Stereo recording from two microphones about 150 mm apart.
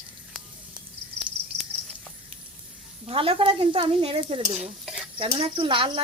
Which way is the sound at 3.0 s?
35° right (ahead or behind).